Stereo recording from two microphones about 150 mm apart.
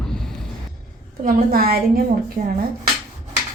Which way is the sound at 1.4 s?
80° right.